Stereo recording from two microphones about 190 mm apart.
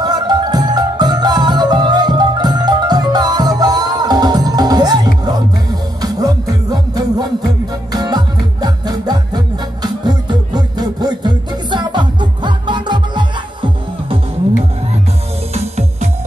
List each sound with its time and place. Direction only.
0.0 s music: 20° right (ahead or behind)
15.5 s music: 35° right (ahead or behind)